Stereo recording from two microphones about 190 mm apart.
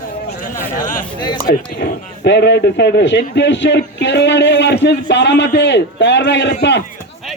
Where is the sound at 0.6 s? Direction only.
45° left (ahead or behind).